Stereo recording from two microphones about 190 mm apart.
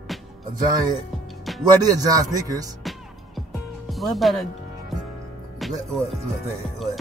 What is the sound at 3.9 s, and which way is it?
Speech, centre (ahead or behind).